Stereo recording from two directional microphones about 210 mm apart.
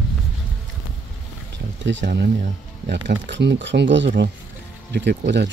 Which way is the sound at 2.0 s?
50° right (ahead or behind).